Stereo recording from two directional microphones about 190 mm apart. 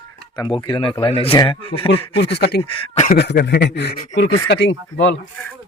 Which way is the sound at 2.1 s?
60° left (ahead or behind).